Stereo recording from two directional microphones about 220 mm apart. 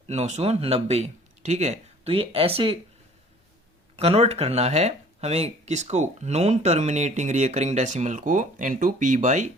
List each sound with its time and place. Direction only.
0.1 s speech: 30° right (ahead or behind)
3.9 s speech: 25° right (ahead or behind)